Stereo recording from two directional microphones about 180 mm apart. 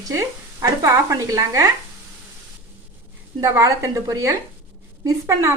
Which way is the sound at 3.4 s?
20° right (ahead or behind).